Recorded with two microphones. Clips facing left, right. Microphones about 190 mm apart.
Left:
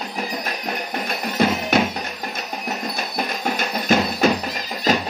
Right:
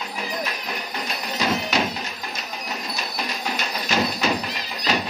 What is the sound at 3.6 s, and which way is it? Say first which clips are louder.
Music: left 5 dB; 50° left (ahead or behind).